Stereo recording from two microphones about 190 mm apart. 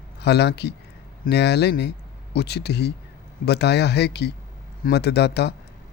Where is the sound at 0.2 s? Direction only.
60° left (ahead or behind).